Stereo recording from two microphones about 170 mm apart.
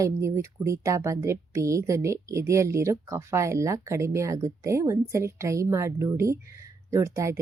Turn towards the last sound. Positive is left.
turn(degrees=-15)  # may be behind; listen again after turning